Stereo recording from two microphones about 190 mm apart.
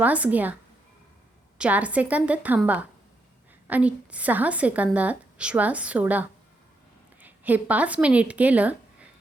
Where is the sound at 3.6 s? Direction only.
10° right (ahead or behind).